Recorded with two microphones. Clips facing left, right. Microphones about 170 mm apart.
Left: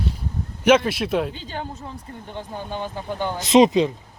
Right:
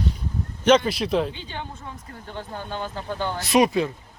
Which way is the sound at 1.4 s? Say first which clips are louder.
Left 3 dB; 40° left (ahead or behind).